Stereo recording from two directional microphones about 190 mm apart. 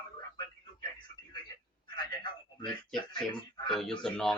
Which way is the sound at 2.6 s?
25° left (ahead or behind).